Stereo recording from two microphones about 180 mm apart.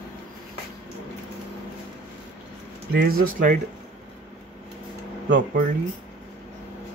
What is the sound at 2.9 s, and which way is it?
Speech, 60° right (ahead or behind).